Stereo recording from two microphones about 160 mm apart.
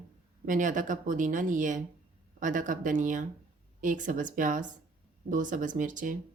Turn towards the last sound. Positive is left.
turn(degrees=-55)  # may be behind; listen again after turning